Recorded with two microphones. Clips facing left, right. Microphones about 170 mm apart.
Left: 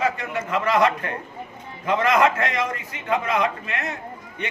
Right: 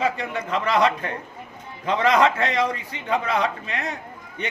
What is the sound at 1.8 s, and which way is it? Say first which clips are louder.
A man's voice: even; 30° right (ahead or behind).